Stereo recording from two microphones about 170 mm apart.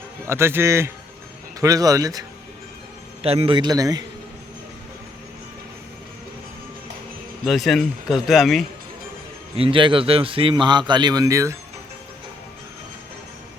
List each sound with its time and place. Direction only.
0.3 s a man's voice: 15° right (ahead or behind)
3.2 s a man's voice: 35° right (ahead or behind)
7.4 s a man's voice: centre (ahead or behind)
9.6 s a man's voice: 30° right (ahead or behind)